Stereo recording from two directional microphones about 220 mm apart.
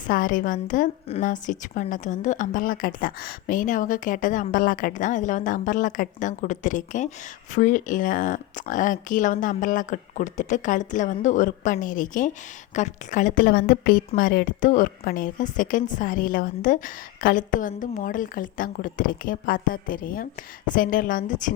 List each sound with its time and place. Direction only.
0.1 s a woman's voice: 40° left (ahead or behind)